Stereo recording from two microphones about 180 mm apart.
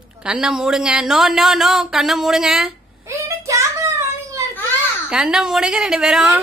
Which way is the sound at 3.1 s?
15° right (ahead or behind).